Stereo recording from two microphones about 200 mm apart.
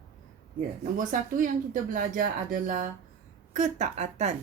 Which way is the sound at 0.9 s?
40° right (ahead or behind).